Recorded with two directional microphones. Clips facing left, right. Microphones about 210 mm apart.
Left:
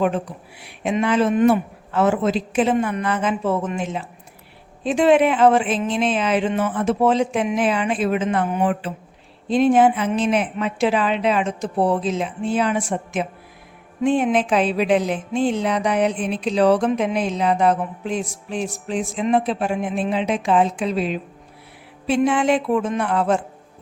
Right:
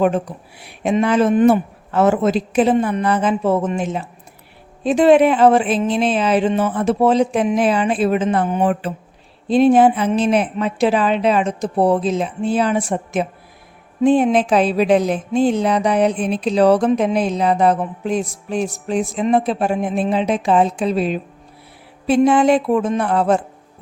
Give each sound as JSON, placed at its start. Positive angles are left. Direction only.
{"t": 0.6, "sound": "speech", "side_deg": -40}